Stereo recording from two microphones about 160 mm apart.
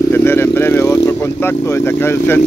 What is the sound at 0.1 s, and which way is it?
Vehicle, 15° left (ahead or behind).